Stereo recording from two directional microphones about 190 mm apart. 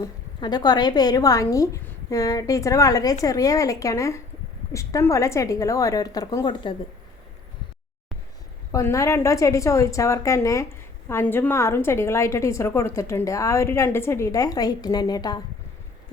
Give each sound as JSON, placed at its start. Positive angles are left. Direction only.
{"t": 0.0, "sound": "a woman's voice", "side_deg": 20}
{"t": 8.7, "sound": "a woman's voice", "side_deg": 15}